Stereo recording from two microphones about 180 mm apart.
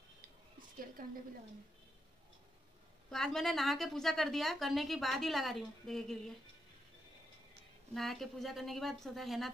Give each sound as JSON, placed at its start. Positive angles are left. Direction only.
{"t": 1.0, "sound": "a woman's voice", "side_deg": -50}
{"t": 3.1, "sound": "a woman's voice", "side_deg": 0}
{"t": 7.9, "sound": "a woman's voice", "side_deg": 0}